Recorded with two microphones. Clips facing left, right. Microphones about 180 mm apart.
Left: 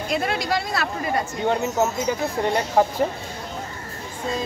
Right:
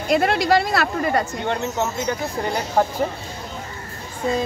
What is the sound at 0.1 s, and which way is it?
Speech, 60° right (ahead or behind).